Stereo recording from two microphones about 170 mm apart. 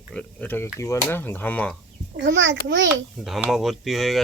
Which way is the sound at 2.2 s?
90° right.